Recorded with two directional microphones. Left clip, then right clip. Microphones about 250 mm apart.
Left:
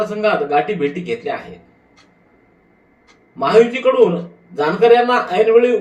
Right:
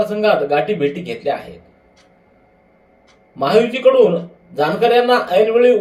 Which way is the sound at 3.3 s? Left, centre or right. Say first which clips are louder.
Left 2 dB; right.